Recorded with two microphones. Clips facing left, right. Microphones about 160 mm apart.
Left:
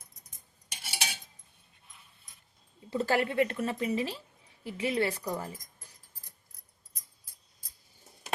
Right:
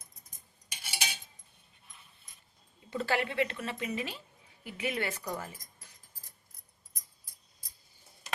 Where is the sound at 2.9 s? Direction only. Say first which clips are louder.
Left 3 dB; 40° left (ahead or behind).